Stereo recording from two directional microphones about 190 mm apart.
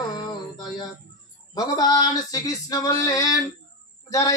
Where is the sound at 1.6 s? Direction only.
20° left (ahead or behind).